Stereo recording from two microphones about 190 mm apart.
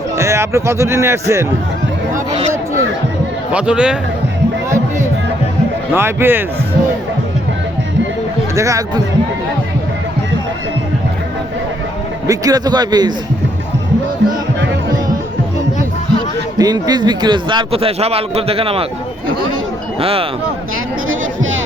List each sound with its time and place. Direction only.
0.2 s a man's voice: 15° right (ahead or behind)
3.5 s a man's voice: 5° right (ahead or behind)
5.9 s a man's voice: 10° right (ahead or behind)
8.5 s a man's voice: 15° right (ahead or behind)
12.3 s a man's voice: 20° right (ahead or behind)
16.6 s a man's voice: 20° right (ahead or behind)
20.0 s speech: 30° right (ahead or behind)